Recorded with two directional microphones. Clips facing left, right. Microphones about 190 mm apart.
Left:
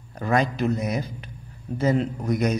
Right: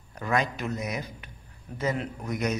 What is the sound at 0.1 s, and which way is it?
Speech, 35° left (ahead or behind).